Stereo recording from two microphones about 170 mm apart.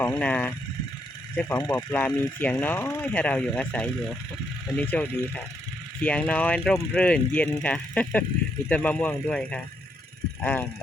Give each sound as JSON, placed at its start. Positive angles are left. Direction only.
{"t": 0.2, "sound": "speech", "side_deg": 10}